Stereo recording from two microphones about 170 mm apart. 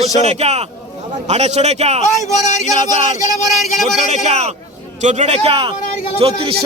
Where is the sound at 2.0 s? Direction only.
45° left (ahead or behind).